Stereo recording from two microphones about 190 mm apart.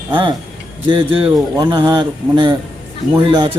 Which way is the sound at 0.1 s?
25° right (ahead or behind).